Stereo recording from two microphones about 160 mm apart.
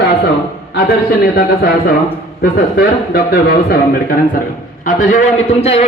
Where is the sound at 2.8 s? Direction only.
90° left.